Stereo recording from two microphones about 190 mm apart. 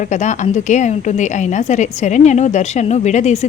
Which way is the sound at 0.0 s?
40° left (ahead or behind).